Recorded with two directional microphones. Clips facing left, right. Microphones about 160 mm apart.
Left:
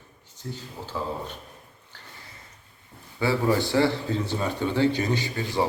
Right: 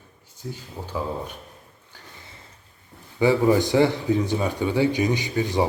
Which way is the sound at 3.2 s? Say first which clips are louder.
Right 5 dB; 15° right (ahead or behind).